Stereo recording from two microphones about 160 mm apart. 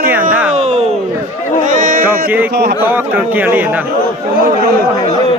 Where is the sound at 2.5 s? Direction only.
75° right (ahead or behind).